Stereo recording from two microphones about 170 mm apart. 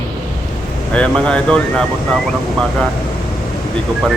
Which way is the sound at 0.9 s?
5° left (ahead or behind).